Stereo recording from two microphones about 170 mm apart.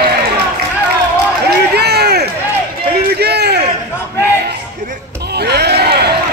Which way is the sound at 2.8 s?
70° right (ahead or behind).